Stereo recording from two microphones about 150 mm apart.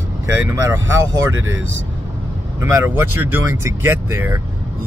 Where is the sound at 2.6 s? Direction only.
15° right (ahead or behind).